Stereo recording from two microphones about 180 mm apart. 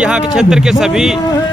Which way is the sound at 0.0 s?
5° right (ahead or behind).